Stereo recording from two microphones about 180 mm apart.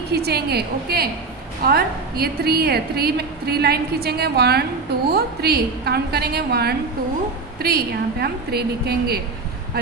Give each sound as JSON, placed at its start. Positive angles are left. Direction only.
{"t": 0.1, "sound": "a woman's voice", "side_deg": -65}